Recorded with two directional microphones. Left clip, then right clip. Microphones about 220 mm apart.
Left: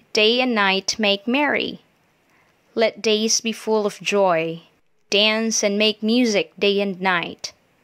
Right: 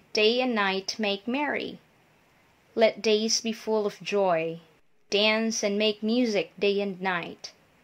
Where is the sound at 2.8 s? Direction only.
25° left (ahead or behind).